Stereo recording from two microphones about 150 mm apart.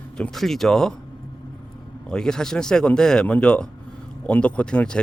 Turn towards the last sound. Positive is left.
turn(degrees=5)  # may be behind; listen again after turning